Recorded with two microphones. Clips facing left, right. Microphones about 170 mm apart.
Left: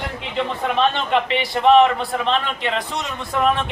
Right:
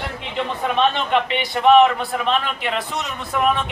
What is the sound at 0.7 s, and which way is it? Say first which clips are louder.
A man's voice: even; centre (ahead or behind).